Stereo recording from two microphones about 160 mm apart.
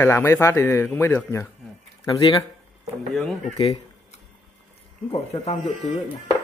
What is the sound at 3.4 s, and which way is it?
Speech, 40° left (ahead or behind).